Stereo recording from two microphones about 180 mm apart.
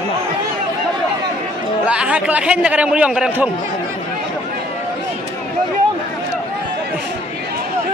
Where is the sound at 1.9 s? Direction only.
5° right (ahead or behind).